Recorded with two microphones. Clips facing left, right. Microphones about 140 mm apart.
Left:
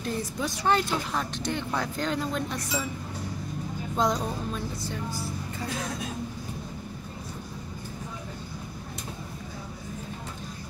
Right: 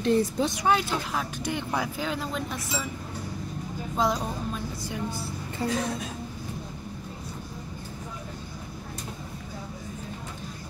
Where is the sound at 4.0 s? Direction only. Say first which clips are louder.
Even; 5° right (ahead or behind).